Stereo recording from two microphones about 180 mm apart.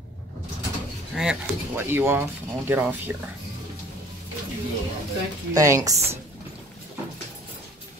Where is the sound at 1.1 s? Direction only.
5° right (ahead or behind).